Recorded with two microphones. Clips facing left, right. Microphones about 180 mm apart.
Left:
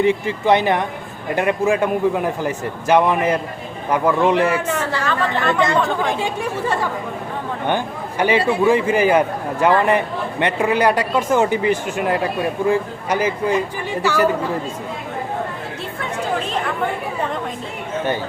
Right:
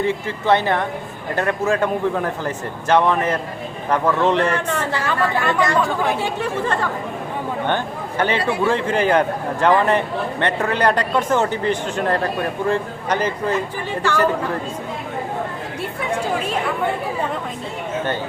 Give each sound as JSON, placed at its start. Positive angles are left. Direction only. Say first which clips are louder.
{"t": 0.0, "sound": "speech", "louder": "left 4 dB", "side_deg": 15}
{"t": 4.9, "sound": "a woman's voice", "louder": "even", "side_deg": -15}
{"t": 5.7, "sound": "speech", "louder": "even", "side_deg": 0}
{"t": 6.1, "sound": "speech", "louder": "even", "side_deg": 15}
{"t": 8.2, "sound": "speech", "louder": "left 3 dB", "side_deg": 10}